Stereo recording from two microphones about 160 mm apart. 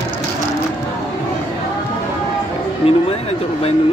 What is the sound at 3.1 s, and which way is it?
Speech, 40° left (ahead or behind).